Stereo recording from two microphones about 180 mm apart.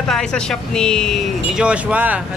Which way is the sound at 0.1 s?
5° left (ahead or behind).